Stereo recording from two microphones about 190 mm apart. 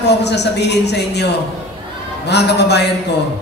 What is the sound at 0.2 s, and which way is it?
A man's voice, 60° left (ahead or behind).